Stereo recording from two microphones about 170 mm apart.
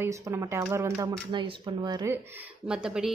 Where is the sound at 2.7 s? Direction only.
5° right (ahead or behind).